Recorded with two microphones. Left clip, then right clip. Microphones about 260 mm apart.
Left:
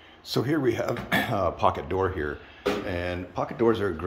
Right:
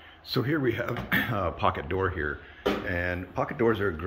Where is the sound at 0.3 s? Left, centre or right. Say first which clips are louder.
Left 2 dB; centre.